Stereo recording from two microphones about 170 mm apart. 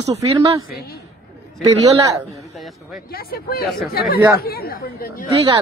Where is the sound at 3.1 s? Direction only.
60° left (ahead or behind).